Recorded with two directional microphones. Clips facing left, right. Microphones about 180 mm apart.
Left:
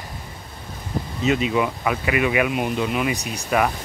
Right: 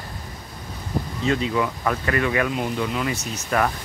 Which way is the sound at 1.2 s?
15° left (ahead or behind).